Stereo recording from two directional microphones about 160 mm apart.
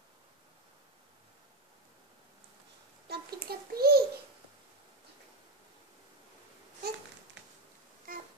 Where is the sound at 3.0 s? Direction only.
75° right (ahead or behind).